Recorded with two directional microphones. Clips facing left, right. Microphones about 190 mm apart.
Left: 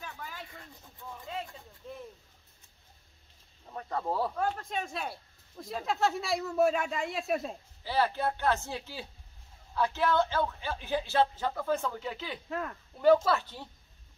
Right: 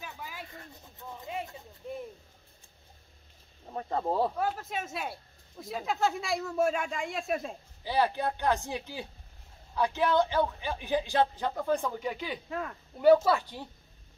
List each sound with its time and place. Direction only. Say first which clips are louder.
0.0 s a sound: even; 10° right (ahead or behind)
0.9 s a sound: right 2 dB; 20° right (ahead or behind)
3.7 s speech: right 3 dB; 25° right (ahead or behind)
4.4 s speech: even; 5° right (ahead or behind)
7.8 s speech: right 1 dB; 15° right (ahead or behind)
12.4 s speech: left 3 dB; centre (ahead or behind)
13.0 s speech: right 2 dB; 10° right (ahead or behind)